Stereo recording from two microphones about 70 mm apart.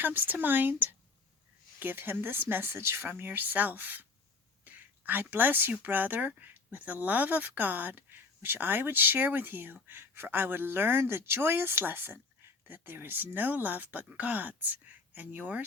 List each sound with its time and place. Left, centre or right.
0.0 s speech: right
4.6 s whispering: right
5.8 s speech: right